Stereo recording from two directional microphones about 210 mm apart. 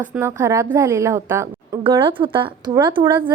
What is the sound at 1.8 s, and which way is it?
Speech, 25° right (ahead or behind).